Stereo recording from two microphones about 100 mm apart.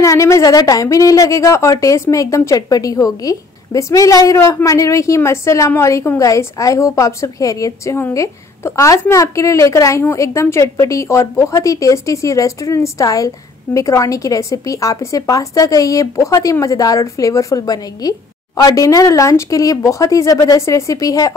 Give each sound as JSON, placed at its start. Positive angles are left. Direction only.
{"t": 0.0, "sound": "a woman's voice", "side_deg": 35}